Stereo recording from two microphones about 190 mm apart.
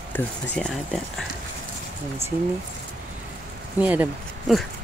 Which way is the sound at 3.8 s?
10° right (ahead or behind).